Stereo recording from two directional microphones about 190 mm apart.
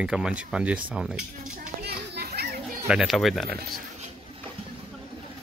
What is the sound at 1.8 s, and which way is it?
Children playing, 55° right (ahead or behind).